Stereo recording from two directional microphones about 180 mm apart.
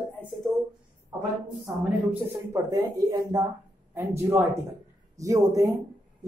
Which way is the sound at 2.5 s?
20° right (ahead or behind).